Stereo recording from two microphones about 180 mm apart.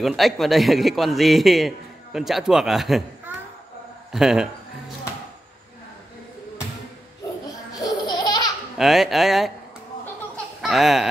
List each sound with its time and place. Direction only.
0.0 s a man's voice: centre (ahead or behind)
4.1 s music: 5° right (ahead or behind)
7.8 s baby laughter: 25° left (ahead or behind)
8.7 s a man's voice: centre (ahead or behind)
10.3 s a sound: centre (ahead or behind)